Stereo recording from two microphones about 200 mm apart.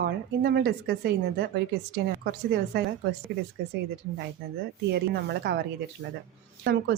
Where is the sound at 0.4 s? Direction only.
50° right (ahead or behind).